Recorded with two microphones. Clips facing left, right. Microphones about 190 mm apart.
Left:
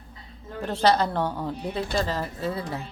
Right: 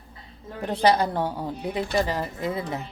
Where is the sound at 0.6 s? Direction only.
15° right (ahead or behind).